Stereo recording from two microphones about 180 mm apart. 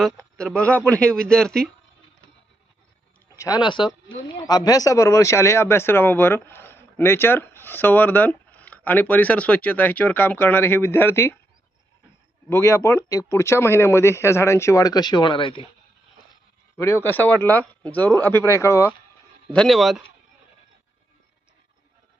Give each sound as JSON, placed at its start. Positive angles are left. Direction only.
{"t": 0.3, "sound": "a man's voice", "side_deg": 5}
{"t": 3.3, "sound": "speech", "side_deg": 20}
{"t": 12.5, "sound": "speech", "side_deg": 15}
{"t": 16.7, "sound": "speech", "side_deg": 15}
{"t": 19.5, "sound": "speech", "side_deg": 0}